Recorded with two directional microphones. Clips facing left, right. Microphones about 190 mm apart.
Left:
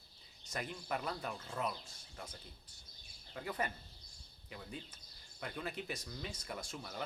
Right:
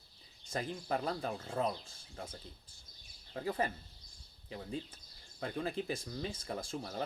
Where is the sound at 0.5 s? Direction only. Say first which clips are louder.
Right 4 dB; 30° right (ahead or behind).